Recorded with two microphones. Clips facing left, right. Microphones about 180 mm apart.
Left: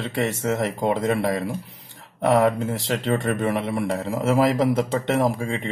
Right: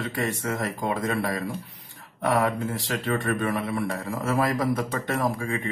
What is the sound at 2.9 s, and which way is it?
A man's voice, 25° left (ahead or behind).